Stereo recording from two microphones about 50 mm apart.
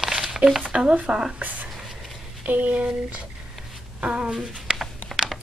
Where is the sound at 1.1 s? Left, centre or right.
Centre.